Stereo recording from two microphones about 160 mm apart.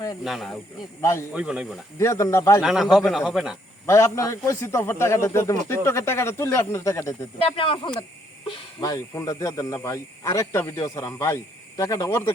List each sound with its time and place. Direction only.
0.3 s a man's voice: centre (ahead or behind)
1.0 s a man's voice: 15° left (ahead or behind)
1.3 s a man's voice: 5° right (ahead or behind)
2.0 s speech: 20° left (ahead or behind)
2.6 s a man's voice: 5° right (ahead or behind)
3.8 s a man's voice: 20° left (ahead or behind)
7.4 s speech: 35° left (ahead or behind)
8.8 s speech: 20° left (ahead or behind)